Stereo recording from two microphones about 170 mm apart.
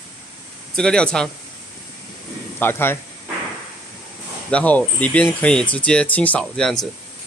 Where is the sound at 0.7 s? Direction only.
5° left (ahead or behind).